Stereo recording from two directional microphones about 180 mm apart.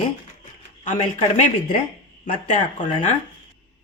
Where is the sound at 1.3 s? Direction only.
40° left (ahead or behind).